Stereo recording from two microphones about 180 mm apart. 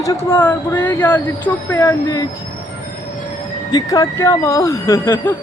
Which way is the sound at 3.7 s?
20° left (ahead or behind).